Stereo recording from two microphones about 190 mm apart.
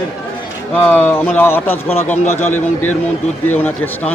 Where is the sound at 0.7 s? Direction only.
10° left (ahead or behind).